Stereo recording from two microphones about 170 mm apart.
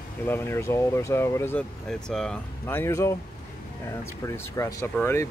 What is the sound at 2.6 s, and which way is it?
Speech, 15° left (ahead or behind).